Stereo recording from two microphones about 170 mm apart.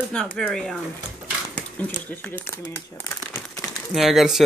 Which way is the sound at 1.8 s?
10° left (ahead or behind).